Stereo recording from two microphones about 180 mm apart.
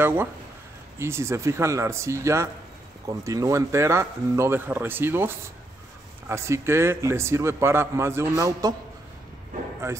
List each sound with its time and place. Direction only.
0.0 s a man's voice: 10° right (ahead or behind)